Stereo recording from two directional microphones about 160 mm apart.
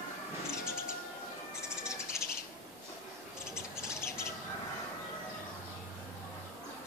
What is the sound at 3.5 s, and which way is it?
Bird, 15° left (ahead or behind).